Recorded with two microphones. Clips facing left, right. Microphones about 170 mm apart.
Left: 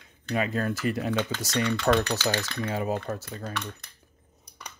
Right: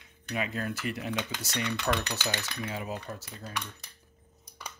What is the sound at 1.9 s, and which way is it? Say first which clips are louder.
Speech: left 8 dB; 50° left (ahead or behind).